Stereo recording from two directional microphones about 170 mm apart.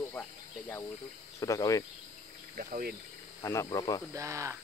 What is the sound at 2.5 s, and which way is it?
Speech, 50° right (ahead or behind).